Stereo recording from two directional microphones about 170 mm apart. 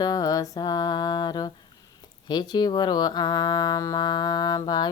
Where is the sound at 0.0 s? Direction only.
20° left (ahead or behind).